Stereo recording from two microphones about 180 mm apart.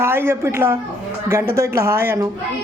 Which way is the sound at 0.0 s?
15° right (ahead or behind).